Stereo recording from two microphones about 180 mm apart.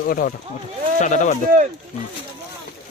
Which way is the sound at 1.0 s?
45° left (ahead or behind).